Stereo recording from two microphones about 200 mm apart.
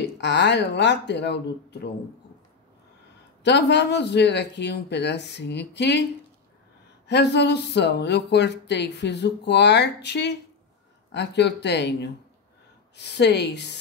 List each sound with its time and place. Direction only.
0.0 s speech: 60° left (ahead or behind)
3.4 s speech: 60° left (ahead or behind)
7.1 s speech: 60° left (ahead or behind)